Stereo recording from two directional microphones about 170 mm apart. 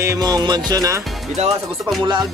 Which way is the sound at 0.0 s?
20° right (ahead or behind).